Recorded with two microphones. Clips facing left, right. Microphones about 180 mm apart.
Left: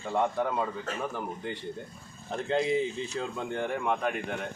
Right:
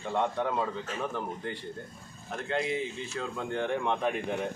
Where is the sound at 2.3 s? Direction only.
30° left (ahead or behind).